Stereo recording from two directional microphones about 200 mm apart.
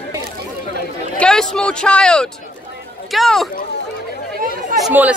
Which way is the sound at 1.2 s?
5° left (ahead or behind).